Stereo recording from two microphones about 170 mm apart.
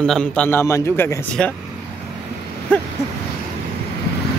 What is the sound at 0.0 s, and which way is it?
A man's voice, 5° left (ahead or behind).